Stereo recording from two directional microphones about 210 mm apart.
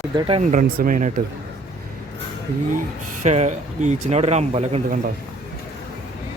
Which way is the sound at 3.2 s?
35° right (ahead or behind).